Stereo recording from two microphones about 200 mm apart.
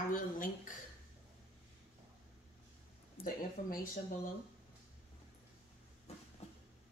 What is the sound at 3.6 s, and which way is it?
Speech, 45° left (ahead or behind).